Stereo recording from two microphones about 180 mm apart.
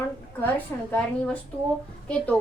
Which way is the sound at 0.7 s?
10° left (ahead or behind).